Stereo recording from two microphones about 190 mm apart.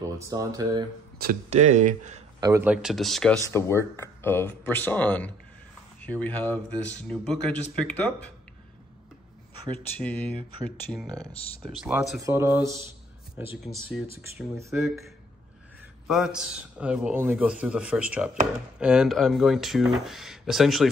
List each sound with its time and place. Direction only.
0.3 s speech: 20° right (ahead or behind)
1.2 s speech: 45° right (ahead or behind)
2.4 s a man's voice: 10° right (ahead or behind)
3.4 s speech: 15° left (ahead or behind)
10.0 s a man's voice: 5° left (ahead or behind)
12.2 s speech: 15° right (ahead or behind)
16.1 s a man's voice: 5° right (ahead or behind)